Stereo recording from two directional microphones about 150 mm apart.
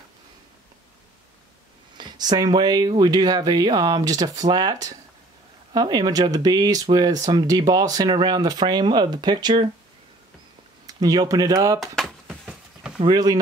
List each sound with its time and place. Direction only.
2.0 s speech: 30° right (ahead or behind)
10.9 s speech: 25° right (ahead or behind)
11.8 s a sound: centre (ahead or behind)
13.0 s speech: 25° right (ahead or behind)